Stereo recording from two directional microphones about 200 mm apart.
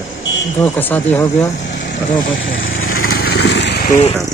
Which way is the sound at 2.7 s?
90° left.